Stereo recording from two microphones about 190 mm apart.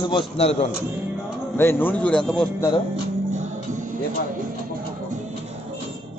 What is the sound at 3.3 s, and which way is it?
Music, 40° right (ahead or behind).